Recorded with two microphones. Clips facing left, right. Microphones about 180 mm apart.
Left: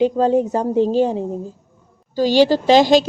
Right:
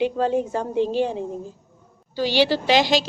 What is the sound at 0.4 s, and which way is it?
A woman's voice, 40° left (ahead or behind).